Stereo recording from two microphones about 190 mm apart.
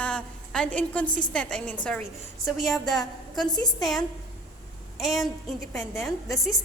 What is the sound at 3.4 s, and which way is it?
Speech, 20° left (ahead or behind).